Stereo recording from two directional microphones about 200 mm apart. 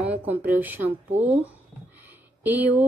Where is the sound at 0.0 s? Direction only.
10° right (ahead or behind).